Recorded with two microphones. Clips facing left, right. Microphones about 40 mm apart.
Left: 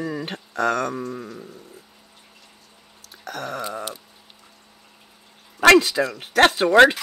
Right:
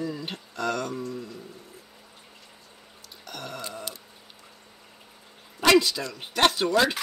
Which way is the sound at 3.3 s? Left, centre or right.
Left.